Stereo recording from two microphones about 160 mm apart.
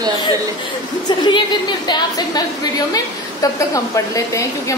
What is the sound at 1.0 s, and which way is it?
A woman's voice, 30° left (ahead or behind).